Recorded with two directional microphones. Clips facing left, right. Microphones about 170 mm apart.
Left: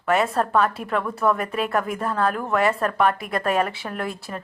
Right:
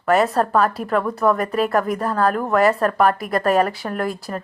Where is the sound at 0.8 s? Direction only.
45° right (ahead or behind).